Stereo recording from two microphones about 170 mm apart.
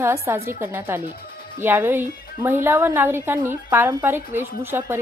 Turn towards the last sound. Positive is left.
turn(degrees=-15)  # may be behind; listen again after turning